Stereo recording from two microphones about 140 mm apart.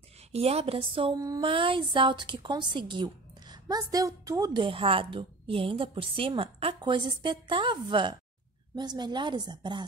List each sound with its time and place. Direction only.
0.3 s a woman's voice: 45° right (ahead or behind)
1.1 s a woman's voice: 25° right (ahead or behind)